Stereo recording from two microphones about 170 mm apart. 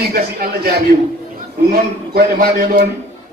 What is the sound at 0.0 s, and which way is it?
A man's voice, 65° right (ahead or behind).